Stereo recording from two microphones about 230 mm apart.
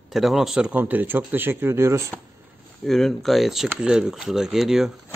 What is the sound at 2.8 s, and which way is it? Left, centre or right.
Speech, centre.